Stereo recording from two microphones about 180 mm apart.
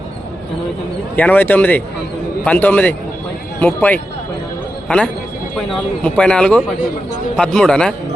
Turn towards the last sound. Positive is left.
turn(degrees=5)  # may be behind; listen again after turning